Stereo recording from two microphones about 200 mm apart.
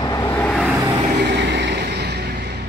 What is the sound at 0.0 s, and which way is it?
Vehicle, 15° left (ahead or behind).